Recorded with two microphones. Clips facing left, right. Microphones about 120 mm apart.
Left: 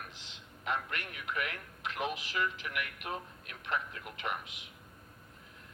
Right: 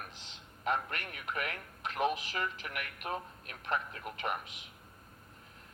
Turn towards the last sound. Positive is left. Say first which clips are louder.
# right 2 dB
turn(degrees=-40)  # may be behind; listen again after turning